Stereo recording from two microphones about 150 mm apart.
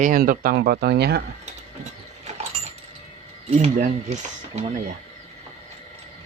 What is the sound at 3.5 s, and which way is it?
Speech, 50° right (ahead or behind).